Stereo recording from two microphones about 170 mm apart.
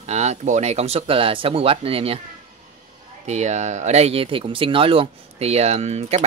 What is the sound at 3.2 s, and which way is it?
Speech, 40° right (ahead or behind).